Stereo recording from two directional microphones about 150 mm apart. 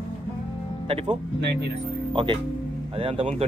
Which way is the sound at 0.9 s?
40° right (ahead or behind).